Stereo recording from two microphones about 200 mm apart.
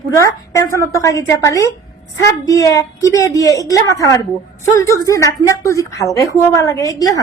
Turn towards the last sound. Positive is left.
turn(degrees=15)  # may be behind; listen again after turning